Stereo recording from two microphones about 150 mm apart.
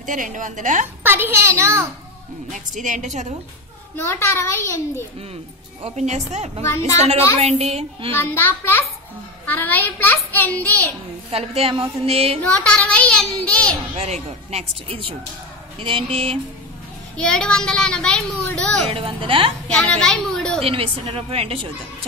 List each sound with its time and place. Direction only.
0.0 s a woman's voice: 60° right (ahead or behind)
1.0 s a child's voice: 15° right (ahead or behind)
2.5 s a woman's voice: 55° right (ahead or behind)
3.9 s a child's voice: 15° left (ahead or behind)
5.8 s speech: 45° right (ahead or behind)
8.1 s a child's voice: 15° left (ahead or behind)
11.3 s a woman's voice: 40° right (ahead or behind)
12.4 s a child's voice: 10° left (ahead or behind)
13.9 s a woman's voice: 45° right (ahead or behind)
17.2 s speech: 5° left (ahead or behind)
18.9 s a woman's voice: 40° right (ahead or behind)
19.7 s a child's voice: 5° left (ahead or behind)
20.6 s a woman's voice: 40° right (ahead or behind)